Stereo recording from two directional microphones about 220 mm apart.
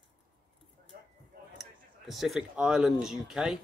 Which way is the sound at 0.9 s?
40° right (ahead or behind).